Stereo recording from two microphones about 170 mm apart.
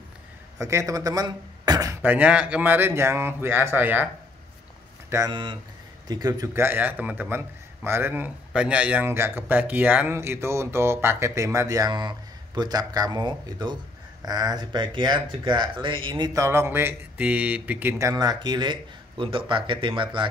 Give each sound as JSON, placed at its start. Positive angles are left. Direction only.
{"t": 0.6, "sound": "a man's voice", "side_deg": -20}
{"t": 5.1, "sound": "a man's voice", "side_deg": -25}